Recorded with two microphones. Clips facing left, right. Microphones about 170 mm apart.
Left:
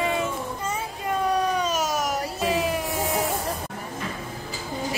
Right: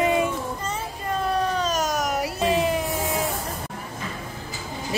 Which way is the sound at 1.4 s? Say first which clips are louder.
Even; 10° left (ahead or behind).